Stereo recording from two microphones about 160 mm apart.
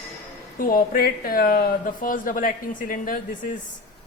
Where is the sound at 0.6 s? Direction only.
65° left (ahead or behind).